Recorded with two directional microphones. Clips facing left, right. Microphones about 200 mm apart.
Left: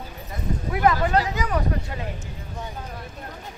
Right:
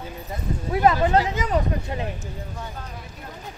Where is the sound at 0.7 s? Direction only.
25° right (ahead or behind).